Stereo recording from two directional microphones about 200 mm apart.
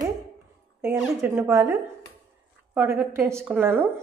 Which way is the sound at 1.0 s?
10° right (ahead or behind).